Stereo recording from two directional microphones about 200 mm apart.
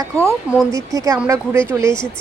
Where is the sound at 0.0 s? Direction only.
15° right (ahead or behind).